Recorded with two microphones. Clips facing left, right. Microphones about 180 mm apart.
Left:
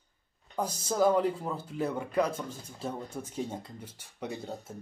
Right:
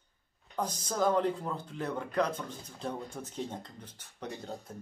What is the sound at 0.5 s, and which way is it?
Speech, 10° left (ahead or behind).